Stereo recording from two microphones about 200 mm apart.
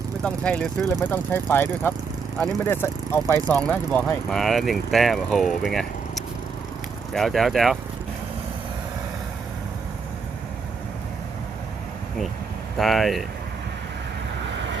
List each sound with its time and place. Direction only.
0.2 s speech: 5° left (ahead or behind)
12.7 s speech: centre (ahead or behind)
14.5 s waves: 65° right (ahead or behind)